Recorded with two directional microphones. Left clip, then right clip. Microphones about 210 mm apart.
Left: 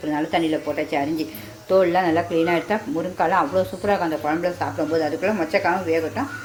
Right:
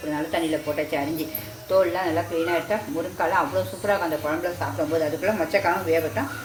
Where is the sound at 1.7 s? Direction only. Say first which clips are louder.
Left 4 dB; 45° left (ahead or behind).